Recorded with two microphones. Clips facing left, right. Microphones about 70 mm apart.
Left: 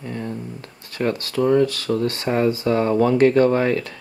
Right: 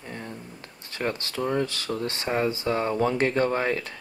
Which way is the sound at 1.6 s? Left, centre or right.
Right.